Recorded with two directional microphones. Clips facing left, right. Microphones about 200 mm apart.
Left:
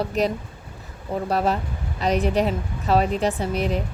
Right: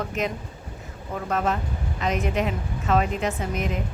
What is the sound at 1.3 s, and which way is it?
Speech, 35° left (ahead or behind).